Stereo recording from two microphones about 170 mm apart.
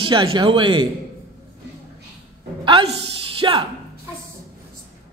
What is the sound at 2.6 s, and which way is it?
A woman's voice, 30° right (ahead or behind).